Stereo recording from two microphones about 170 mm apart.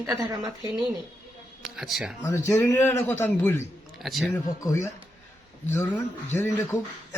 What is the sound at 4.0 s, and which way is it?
Speech, centre (ahead or behind).